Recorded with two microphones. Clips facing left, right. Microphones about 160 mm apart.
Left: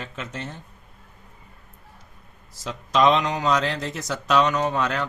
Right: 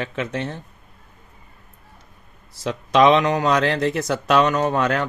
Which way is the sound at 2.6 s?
65° right (ahead or behind).